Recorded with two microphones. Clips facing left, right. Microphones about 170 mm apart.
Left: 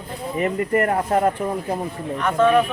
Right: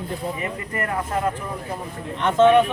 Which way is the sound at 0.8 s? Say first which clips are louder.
Left 6 dB; 35° left (ahead or behind).